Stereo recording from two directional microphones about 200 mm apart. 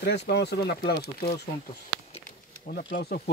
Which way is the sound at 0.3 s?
55° left (ahead or behind).